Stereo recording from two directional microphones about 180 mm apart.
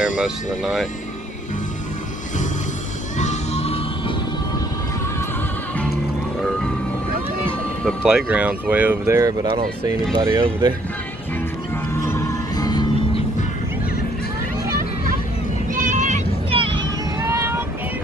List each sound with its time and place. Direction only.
0.2 s speech: 5° right (ahead or behind)
3.2 s music: 40° left (ahead or behind)
7.8 s speech: 5° right (ahead or behind); by 10.7 s 20° right (ahead or behind)
12.1 s music: 20° left (ahead or behind)
15.7 s vehicle: 45° right (ahead or behind)
17.2 s a sound: 15° right (ahead or behind)